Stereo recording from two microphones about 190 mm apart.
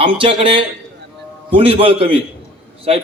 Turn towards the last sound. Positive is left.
turn(degrees=-30)  # may be behind; listen again after turning